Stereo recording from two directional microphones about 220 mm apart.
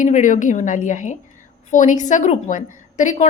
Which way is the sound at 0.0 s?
35° left (ahead or behind).